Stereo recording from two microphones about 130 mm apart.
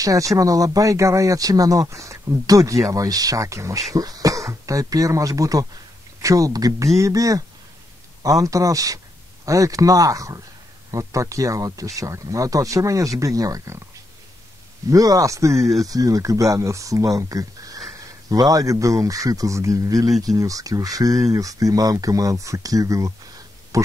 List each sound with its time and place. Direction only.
0.0 s speech: 25° right (ahead or behind)
8.5 s speech: 25° right (ahead or behind)
14.9 s speech: 25° right (ahead or behind)
15.5 s speech: centre (ahead or behind)
15.8 s speech: 25° right (ahead or behind)